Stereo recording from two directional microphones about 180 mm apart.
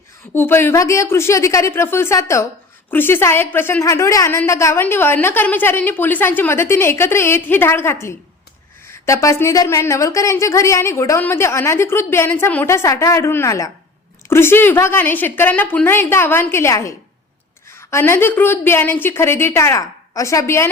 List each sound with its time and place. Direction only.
0.3 s a woman's voice: 10° left (ahead or behind)